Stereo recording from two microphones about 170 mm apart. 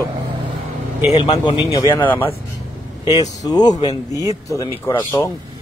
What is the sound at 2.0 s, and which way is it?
Speech, 10° left (ahead or behind).